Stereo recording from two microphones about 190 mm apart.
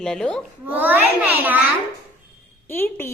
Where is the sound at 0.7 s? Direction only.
10° right (ahead or behind).